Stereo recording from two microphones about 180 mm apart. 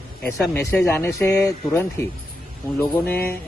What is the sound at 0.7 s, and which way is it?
Speech, 15° left (ahead or behind).